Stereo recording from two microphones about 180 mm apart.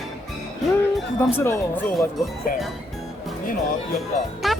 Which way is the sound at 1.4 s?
10° left (ahead or behind).